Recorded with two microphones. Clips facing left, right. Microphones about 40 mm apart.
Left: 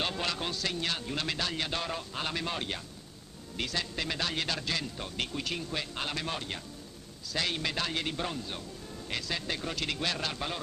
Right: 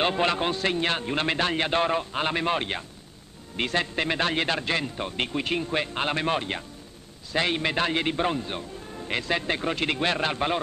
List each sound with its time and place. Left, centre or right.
0.0 s a man's voice: right